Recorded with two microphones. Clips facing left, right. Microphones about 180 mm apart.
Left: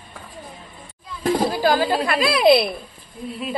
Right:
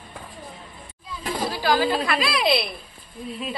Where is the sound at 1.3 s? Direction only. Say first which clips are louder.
Left 3 dB; 50° left (ahead or behind).